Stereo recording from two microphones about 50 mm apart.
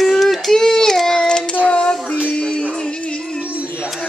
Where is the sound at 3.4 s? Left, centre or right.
Right.